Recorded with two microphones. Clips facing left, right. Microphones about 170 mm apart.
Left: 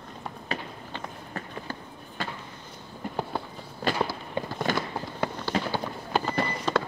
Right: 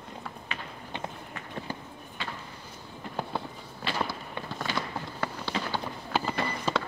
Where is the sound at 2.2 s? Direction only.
45° left (ahead or behind).